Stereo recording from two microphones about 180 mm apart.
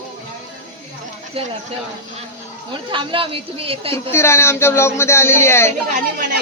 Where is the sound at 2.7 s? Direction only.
25° right (ahead or behind).